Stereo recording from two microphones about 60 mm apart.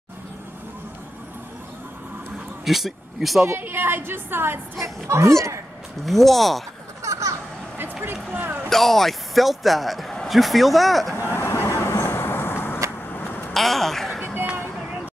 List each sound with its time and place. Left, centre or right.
2.6 s speech: centre
3.4 s a woman's voice: right
4.8 s speech: right
6.0 s speech: centre
7.0 s a sound: right
8.3 s basketball bounce: right
8.6 s speech: centre
11.1 s vehicle: left
13.1 s a sound: left
13.5 s a sound: centre